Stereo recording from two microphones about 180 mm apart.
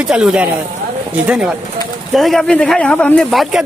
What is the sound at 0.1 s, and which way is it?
Speech, 5° right (ahead or behind).